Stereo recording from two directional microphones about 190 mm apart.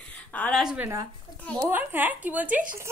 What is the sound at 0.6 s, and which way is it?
Speech, 5° right (ahead or behind).